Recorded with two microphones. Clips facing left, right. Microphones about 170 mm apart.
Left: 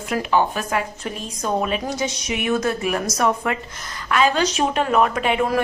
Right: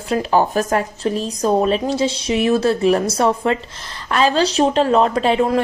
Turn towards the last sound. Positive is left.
turn(degrees=-25)  # may be behind; listen again after turning